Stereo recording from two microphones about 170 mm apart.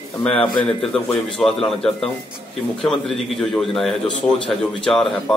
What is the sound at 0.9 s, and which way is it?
A man's voice, centre (ahead or behind).